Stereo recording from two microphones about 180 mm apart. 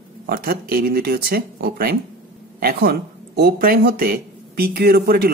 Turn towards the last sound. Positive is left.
turn(degrees=-60)  # may be behind; listen again after turning